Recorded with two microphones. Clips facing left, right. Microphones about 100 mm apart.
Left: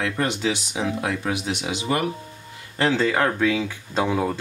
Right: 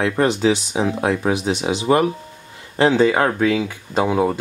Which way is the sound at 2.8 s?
20° right (ahead or behind).